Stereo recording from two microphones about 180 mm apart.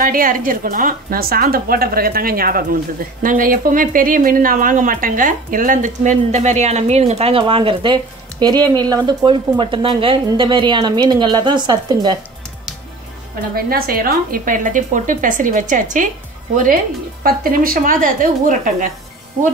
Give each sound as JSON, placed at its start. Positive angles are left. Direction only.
{"t": 0.0, "sound": "a woman's voice", "side_deg": -50}
{"t": 13.6, "sound": "a woman's voice", "side_deg": -55}